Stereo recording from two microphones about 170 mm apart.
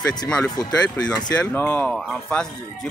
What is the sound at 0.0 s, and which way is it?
Speech, 25° left (ahead or behind).